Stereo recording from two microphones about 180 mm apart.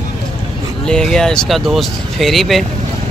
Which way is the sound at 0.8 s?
5° left (ahead or behind).